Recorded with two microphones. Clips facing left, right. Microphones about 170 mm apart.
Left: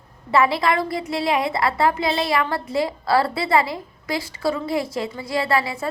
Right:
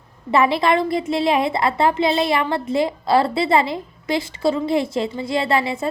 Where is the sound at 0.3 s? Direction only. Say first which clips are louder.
Right 2 dB; 20° right (ahead or behind).